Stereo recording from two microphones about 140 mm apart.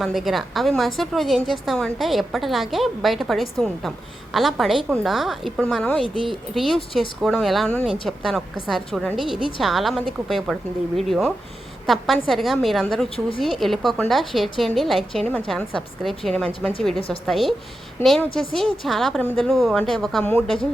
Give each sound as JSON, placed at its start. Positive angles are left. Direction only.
{"t": 0.0, "sound": "a woman's voice", "side_deg": 0}
{"t": 18.0, "sound": "a woman's voice", "side_deg": 15}
{"t": 18.3, "sound": "a woman's voice", "side_deg": 0}